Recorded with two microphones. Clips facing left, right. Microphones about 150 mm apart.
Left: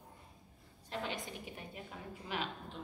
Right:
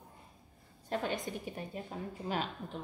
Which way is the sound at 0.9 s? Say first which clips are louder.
Right 6 dB; 45° right (ahead or behind).